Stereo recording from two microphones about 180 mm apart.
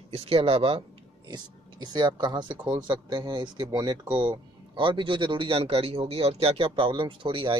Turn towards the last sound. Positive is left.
turn(degrees=-30)  # may be behind; listen again after turning